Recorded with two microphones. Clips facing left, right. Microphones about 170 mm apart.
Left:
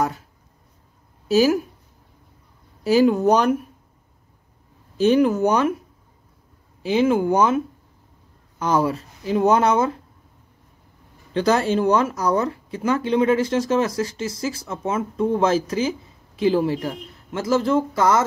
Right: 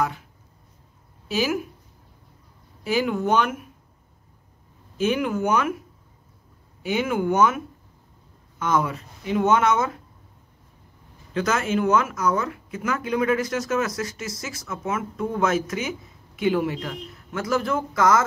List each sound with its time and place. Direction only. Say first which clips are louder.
1.3 s speech: left 8 dB; 40° left (ahead or behind)
2.8 s speech: left 7 dB; 35° left (ahead or behind)
4.9 s speech: left 7 dB; 35° left (ahead or behind)
6.8 s speech: left 6 dB; 30° left (ahead or behind)
11.3 s speech: left 4 dB; 35° left (ahead or behind)